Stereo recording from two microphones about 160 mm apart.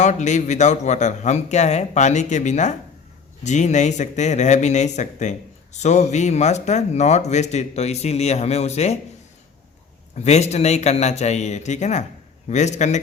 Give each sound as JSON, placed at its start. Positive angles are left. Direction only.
{"t": 0.0, "sound": "a man's voice", "side_deg": 50}
{"t": 10.2, "sound": "a man's voice", "side_deg": 45}